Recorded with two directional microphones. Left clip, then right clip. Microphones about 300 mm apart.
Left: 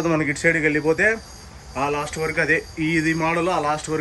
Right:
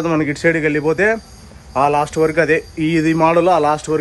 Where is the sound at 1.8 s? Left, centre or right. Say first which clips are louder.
Right 9 dB; right.